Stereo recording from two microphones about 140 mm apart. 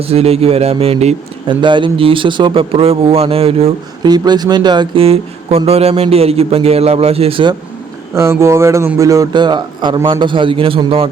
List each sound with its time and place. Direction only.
0.0 s speech: 45° right (ahead or behind)
1.5 s a man's voice: 35° right (ahead or behind)
4.0 s speech: 30° right (ahead or behind)
8.1 s a man's voice: 20° right (ahead or behind); by 11.1 s 40° right (ahead or behind)